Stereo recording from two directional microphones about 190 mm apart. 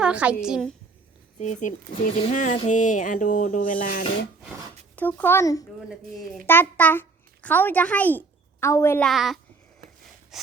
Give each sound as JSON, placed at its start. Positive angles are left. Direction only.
{"t": 0.0, "sound": "a woman's voice", "side_deg": -5}
{"t": 1.4, "sound": "speech", "side_deg": 40}
{"t": 4.9, "sound": "speech", "side_deg": 10}
{"t": 5.9, "sound": "speech", "side_deg": 0}
{"t": 9.0, "sound": "speech", "side_deg": 0}
{"t": 10.3, "sound": "breathing", "side_deg": 0}